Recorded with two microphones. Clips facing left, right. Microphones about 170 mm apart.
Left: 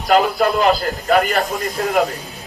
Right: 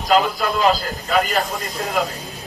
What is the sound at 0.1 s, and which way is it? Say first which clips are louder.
A man's voice: left 3 dB; 55° left (ahead or behind).